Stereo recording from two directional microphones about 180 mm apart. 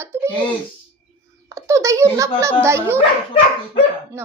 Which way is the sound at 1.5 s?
15° right (ahead or behind).